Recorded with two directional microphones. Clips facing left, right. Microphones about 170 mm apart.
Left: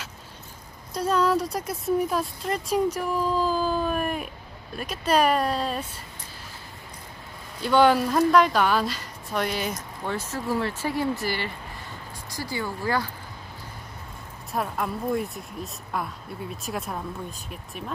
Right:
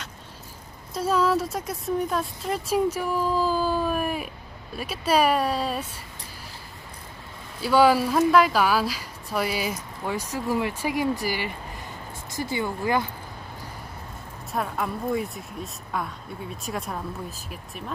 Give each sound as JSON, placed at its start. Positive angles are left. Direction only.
{"t": 0.9, "sound": "speech", "side_deg": -5}
{"t": 7.6, "sound": "speech", "side_deg": -5}
{"t": 14.5, "sound": "speech", "side_deg": 0}